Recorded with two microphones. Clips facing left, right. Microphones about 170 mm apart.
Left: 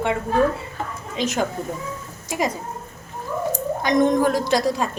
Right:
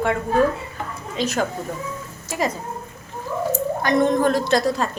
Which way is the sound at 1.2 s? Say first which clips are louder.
Even; 15° left (ahead or behind).